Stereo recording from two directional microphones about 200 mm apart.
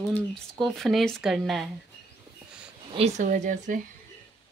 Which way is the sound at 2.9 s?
30° right (ahead or behind).